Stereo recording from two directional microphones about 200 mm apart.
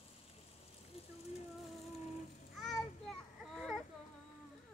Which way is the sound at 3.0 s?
Centre (ahead or behind).